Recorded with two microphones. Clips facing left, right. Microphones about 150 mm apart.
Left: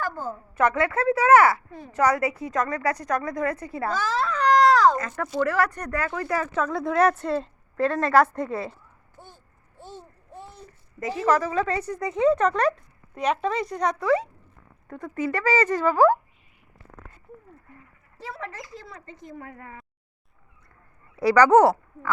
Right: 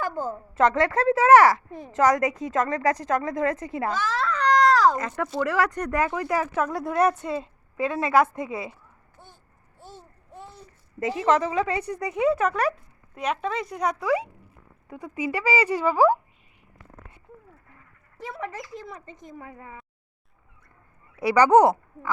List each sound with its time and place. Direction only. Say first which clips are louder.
0.0 s a woman's voice: right 2 dB; 20° right (ahead or behind)
4.2 s baby cry: left 2 dB; 5° left (ahead or behind)
4.9 s speech: left 1 dB; 15° right (ahead or behind)
11.2 s speech: even; 20° right (ahead or behind)
18.2 s speech: right 2 dB; 20° right (ahead or behind)
21.5 s speech: even; 20° right (ahead or behind)